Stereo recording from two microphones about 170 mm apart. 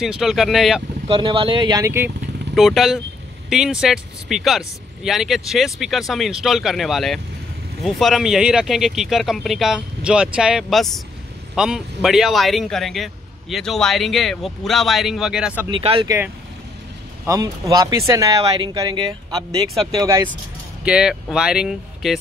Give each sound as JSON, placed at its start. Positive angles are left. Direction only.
{"t": 0.0, "sound": "a man's voice", "side_deg": 0}
{"t": 1.0, "sound": "speech", "side_deg": -30}
{"t": 2.5, "sound": "a man's voice", "side_deg": 0}
{"t": 15.7, "sound": "speech", "side_deg": -30}
{"t": 17.3, "sound": "speech", "side_deg": -20}
{"t": 20.8, "sound": "a man's voice", "side_deg": -5}